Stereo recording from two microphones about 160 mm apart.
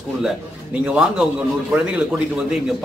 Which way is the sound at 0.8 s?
5° right (ahead or behind).